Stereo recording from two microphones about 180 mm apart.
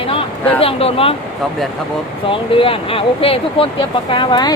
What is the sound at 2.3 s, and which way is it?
Speech, 30° left (ahead or behind).